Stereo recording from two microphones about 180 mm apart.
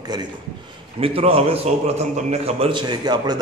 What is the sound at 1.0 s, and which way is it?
A man's voice, 30° right (ahead or behind).